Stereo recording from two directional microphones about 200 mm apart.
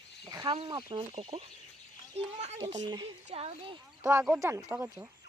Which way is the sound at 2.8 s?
20° right (ahead or behind).